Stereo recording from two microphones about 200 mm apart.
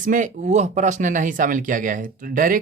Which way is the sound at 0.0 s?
40° right (ahead or behind).